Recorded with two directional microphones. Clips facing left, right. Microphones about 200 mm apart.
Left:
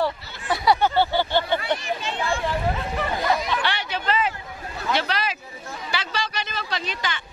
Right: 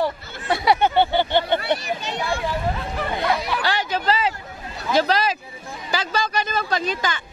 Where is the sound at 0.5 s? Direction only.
20° right (ahead or behind).